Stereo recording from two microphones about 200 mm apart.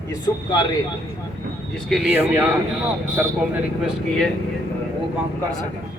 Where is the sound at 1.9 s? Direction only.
5° right (ahead or behind).